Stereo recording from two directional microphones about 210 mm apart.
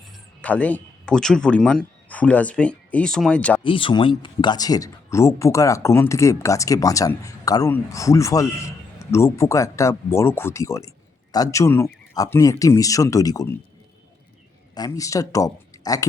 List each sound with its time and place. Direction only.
0.4 s speech: 5° left (ahead or behind)
3.6 s speech: 25° left (ahead or behind)
14.8 s speech: 15° left (ahead or behind)